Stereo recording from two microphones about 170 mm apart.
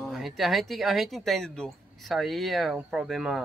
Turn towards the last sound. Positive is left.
turn(degrees=0)  # may be behind; listen again after turning